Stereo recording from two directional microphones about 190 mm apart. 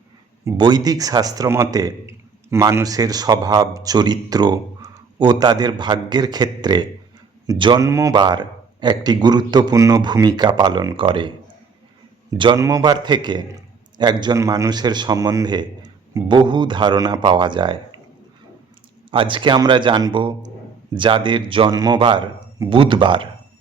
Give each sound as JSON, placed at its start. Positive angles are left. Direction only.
{"t": 0.4, "sound": "a man's voice", "side_deg": -25}
{"t": 19.1, "sound": "a man's voice", "side_deg": -25}